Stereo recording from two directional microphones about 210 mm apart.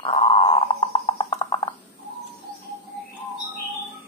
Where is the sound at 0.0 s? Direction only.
25° left (ahead or behind).